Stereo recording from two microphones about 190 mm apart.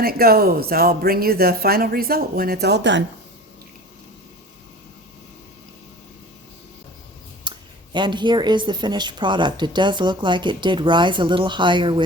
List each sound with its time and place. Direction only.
0.0 s speech: 50° right (ahead or behind)
7.5 s a sound: 25° right (ahead or behind)
7.9 s speech: 25° right (ahead or behind)